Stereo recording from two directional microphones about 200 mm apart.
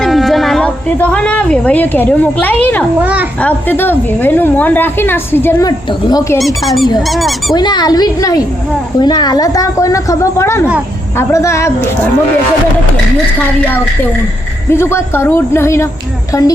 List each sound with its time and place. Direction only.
0.0 s speech: centre (ahead or behind)
3.0 s a child's voice: 5° right (ahead or behind)
3.4 s a woman's voice: 10° left (ahead or behind)
6.6 s speech: centre (ahead or behind)
7.5 s a woman's voice: 20° left (ahead or behind)
13.6 s a woman's voice: 10° left (ahead or behind)